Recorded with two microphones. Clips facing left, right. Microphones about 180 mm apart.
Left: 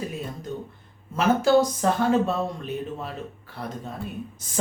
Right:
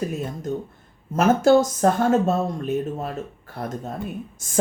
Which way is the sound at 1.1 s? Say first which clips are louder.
Right 3 dB; 45° right (ahead or behind).